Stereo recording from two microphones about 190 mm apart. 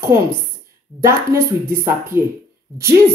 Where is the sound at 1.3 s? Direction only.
15° right (ahead or behind).